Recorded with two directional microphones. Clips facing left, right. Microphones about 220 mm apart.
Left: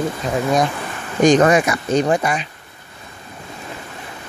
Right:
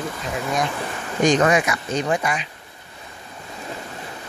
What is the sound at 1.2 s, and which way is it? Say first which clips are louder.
Speech: left 5 dB; 45° left (ahead or behind).